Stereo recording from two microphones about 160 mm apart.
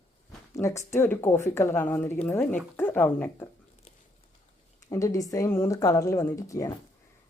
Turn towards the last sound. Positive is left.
turn(degrees=20)  # may be behind; listen again after turning